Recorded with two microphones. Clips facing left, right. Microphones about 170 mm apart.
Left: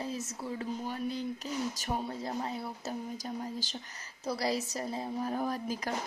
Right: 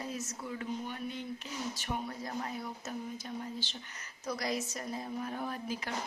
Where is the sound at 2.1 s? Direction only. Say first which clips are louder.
Left 3 dB; 30° left (ahead or behind).